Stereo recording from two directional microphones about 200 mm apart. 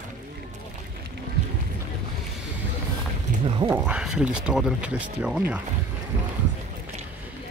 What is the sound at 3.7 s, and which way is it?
Speech, 5° right (ahead or behind).